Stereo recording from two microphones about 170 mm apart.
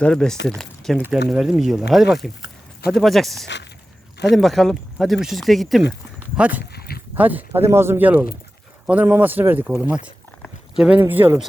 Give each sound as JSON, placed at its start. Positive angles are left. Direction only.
{"t": 0.0, "sound": "speech", "side_deg": 5}
{"t": 3.4, "sound": "speech", "side_deg": 90}
{"t": 4.4, "sound": "speech", "side_deg": 0}
{"t": 6.7, "sound": "dog", "side_deg": 65}
{"t": 7.2, "sound": "speech", "side_deg": -10}